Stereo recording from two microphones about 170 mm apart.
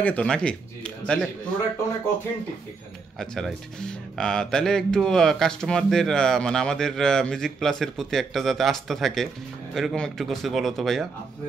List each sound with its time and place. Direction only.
0.0 s speech: 5° left (ahead or behind)
3.2 s speech: centre (ahead or behind)